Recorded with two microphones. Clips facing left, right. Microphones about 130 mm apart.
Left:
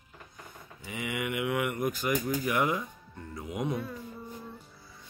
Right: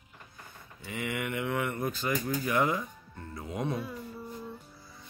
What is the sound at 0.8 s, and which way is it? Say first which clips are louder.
Speech: even; 15° left (ahead or behind).